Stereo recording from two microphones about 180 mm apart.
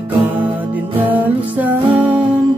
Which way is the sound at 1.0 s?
10° right (ahead or behind).